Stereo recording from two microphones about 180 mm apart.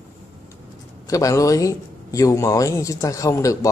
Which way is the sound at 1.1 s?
20° left (ahead or behind).